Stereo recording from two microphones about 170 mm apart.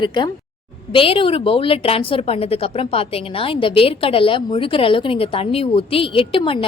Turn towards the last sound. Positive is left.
turn(degrees=30)  # may be behind; listen again after turning